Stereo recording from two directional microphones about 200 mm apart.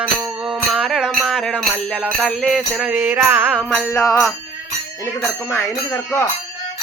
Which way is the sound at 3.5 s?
5° left (ahead or behind).